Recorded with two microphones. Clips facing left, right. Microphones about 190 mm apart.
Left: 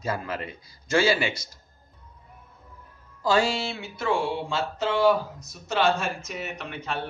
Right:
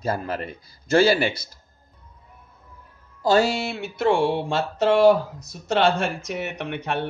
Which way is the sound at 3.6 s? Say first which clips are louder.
Right 7 dB; 55° right (ahead or behind).